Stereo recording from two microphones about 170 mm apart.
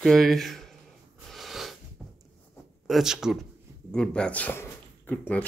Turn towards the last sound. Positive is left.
turn(degrees=10)  # may be behind; listen again after turning